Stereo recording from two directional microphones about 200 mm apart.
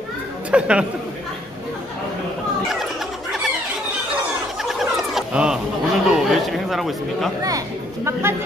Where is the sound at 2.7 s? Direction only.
Centre (ahead or behind).